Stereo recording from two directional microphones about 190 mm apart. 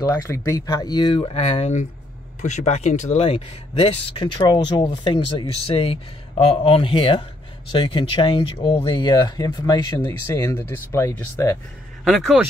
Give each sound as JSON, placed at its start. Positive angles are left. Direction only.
{"t": 0.0, "sound": "speech", "side_deg": 15}
{"t": 12.0, "sound": "speech", "side_deg": 0}